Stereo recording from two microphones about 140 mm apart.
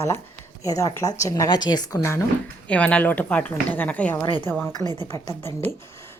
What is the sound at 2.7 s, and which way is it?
A woman's voice, 10° left (ahead or behind).